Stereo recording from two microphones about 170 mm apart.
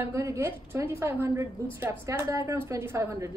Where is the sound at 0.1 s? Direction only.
20° right (ahead or behind).